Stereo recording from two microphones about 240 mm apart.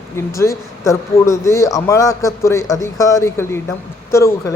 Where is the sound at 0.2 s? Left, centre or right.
Centre.